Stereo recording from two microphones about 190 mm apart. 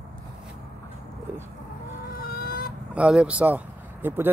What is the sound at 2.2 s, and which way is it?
Fowl, 50° left (ahead or behind).